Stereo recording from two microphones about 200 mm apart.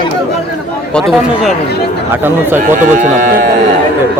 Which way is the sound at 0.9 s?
Centre (ahead or behind).